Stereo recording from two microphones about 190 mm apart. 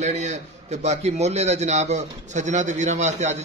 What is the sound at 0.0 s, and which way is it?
A man's voice, 35° right (ahead or behind).